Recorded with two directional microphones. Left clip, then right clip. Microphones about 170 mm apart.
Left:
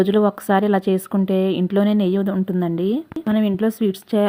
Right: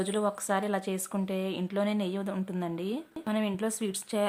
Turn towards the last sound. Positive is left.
turn(degrees=30)  # may be behind; listen again after turning